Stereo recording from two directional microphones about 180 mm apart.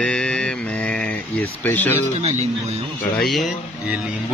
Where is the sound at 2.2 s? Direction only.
35° right (ahead or behind).